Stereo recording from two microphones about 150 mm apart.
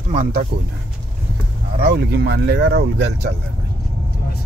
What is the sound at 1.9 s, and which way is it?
Speech, 90° right.